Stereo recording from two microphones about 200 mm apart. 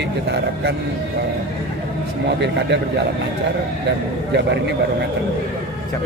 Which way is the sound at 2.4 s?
60° right (ahead or behind).